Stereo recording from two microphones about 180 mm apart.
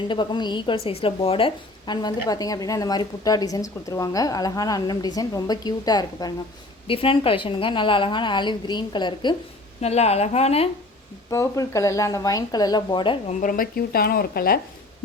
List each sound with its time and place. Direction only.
0.1 s a woman's voice: 25° left (ahead or behind)
9.8 s a woman's voice: 35° left (ahead or behind)
11.3 s a woman's voice: 15° left (ahead or behind)
13.4 s speech: 50° left (ahead or behind)